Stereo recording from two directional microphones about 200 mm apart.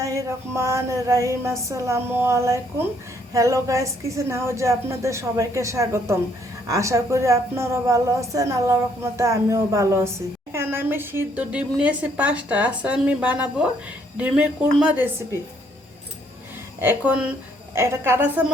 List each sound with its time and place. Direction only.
0.0 s a woman's voice: 15° right (ahead or behind)
16.8 s a woman's voice: 10° right (ahead or behind)